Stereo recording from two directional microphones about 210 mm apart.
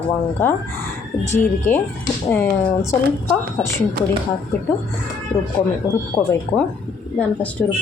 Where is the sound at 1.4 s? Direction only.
10° left (ahead or behind).